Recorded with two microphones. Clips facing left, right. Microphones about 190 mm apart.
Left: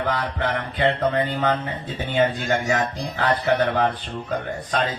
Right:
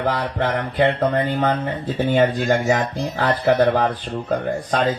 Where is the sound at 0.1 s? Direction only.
45° right (ahead or behind).